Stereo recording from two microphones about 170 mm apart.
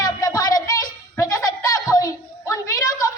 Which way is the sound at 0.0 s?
20° left (ahead or behind).